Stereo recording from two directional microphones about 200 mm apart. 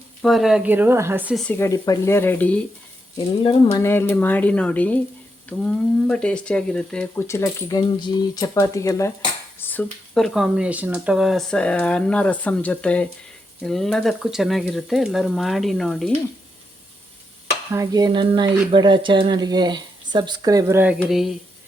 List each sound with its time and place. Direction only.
0.2 s speech: centre (ahead or behind)
1.5 s speech: 15° left (ahead or behind)
17.7 s speech: 15° right (ahead or behind); by 21.3 s centre (ahead or behind)